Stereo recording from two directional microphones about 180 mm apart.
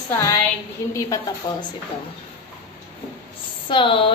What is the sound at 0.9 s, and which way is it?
Speech, 15° left (ahead or behind).